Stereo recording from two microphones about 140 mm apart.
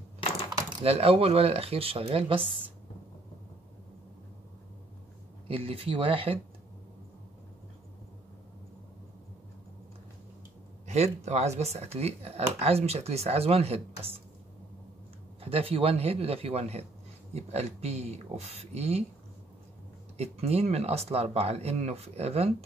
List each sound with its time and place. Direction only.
0.8 s speech: 45° right (ahead or behind)
5.5 s speech: 45° right (ahead or behind)
10.9 s speech: 50° right (ahead or behind)
15.4 s speech: 45° right (ahead or behind)
20.2 s speech: 50° right (ahead or behind)